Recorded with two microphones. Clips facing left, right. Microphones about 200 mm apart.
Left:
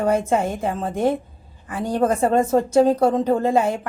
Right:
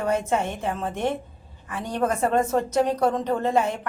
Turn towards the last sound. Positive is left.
turn(degrees=30)  # may be behind; listen again after turning